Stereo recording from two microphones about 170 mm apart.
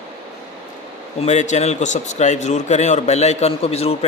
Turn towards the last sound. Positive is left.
turn(degrees=35)  # may be behind; listen again after turning